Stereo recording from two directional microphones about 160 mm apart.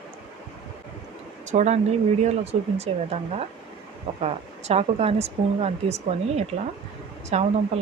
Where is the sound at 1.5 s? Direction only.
45° right (ahead or behind).